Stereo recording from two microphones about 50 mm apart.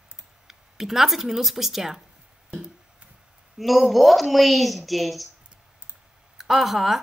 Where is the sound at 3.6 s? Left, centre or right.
Centre.